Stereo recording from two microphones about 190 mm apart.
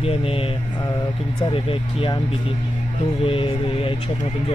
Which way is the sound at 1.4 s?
30° left (ahead or behind).